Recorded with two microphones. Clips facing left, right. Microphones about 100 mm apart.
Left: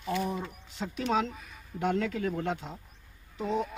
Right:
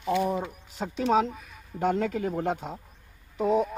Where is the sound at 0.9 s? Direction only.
30° right (ahead or behind).